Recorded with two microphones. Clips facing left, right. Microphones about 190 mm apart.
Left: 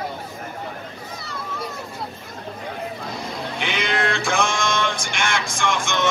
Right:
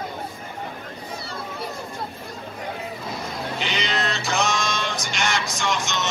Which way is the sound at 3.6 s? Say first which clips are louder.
Left 4 dB; 55° left (ahead or behind).